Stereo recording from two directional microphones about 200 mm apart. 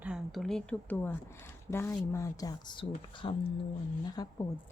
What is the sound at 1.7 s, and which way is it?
A woman's voice, 10° left (ahead or behind).